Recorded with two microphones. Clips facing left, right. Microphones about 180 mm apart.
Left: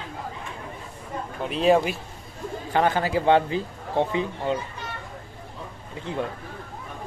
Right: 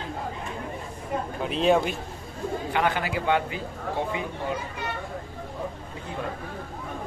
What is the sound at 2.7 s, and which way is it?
Speech, 35° left (ahead or behind).